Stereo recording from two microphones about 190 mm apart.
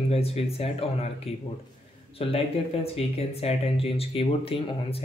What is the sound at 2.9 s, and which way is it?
Speech, 30° left (ahead or behind).